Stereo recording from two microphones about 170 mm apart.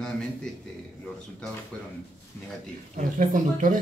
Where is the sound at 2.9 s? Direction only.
50° right (ahead or behind).